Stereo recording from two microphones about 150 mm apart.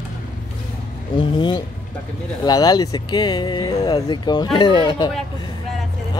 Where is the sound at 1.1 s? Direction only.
30° left (ahead or behind).